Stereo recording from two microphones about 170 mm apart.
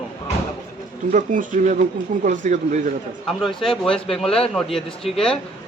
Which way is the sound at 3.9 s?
35° left (ahead or behind).